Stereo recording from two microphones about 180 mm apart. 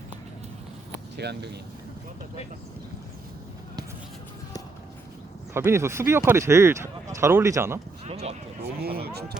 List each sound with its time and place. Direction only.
1.1 s speech: 65° right (ahead or behind)
5.5 s speech: 15° right (ahead or behind)
8.0 s speech: 40° right (ahead or behind)
8.8 s speech: 60° right (ahead or behind)